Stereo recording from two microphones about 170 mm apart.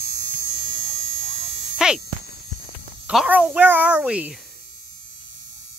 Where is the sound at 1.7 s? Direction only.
5° right (ahead or behind).